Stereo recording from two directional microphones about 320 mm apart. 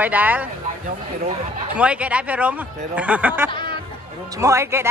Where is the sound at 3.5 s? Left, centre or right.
Centre.